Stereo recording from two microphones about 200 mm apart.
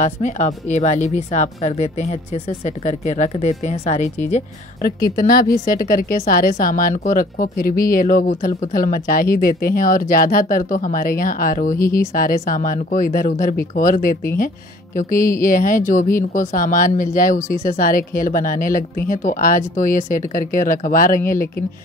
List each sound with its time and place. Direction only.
0.0 s speech: 35° left (ahead or behind)
5.1 s speech: 45° left (ahead or behind)